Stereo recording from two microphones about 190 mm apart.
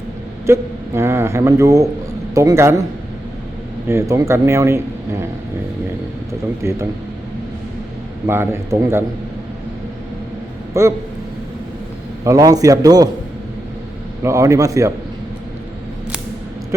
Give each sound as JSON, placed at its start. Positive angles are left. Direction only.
{"t": 0.4, "sound": "speech", "side_deg": -15}
{"t": 3.8, "sound": "speech", "side_deg": -15}
{"t": 6.6, "sound": "speech", "side_deg": -15}
{"t": 8.3, "sound": "speech", "side_deg": -15}
{"t": 10.8, "sound": "speech", "side_deg": -15}
{"t": 12.2, "sound": "a man's voice", "side_deg": -20}
{"t": 14.2, "sound": "speech", "side_deg": -15}